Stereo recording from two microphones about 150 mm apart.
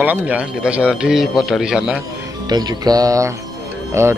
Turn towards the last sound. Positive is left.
turn(degrees=-20)  # may be behind; listen again after turning